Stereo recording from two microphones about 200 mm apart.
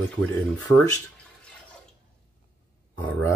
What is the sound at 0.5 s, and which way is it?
Speech, 10° left (ahead or behind).